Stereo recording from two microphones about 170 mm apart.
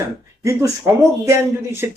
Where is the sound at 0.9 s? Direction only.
15° right (ahead or behind).